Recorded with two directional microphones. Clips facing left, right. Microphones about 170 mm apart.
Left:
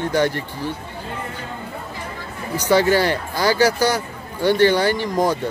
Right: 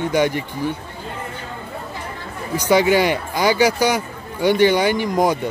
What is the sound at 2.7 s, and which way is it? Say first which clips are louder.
Speech: right 1 dB; 15° right (ahead or behind).